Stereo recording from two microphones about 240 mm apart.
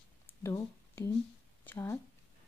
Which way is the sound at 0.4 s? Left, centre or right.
Centre.